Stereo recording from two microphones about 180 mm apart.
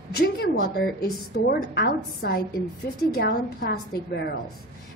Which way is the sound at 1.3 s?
65° left (ahead or behind).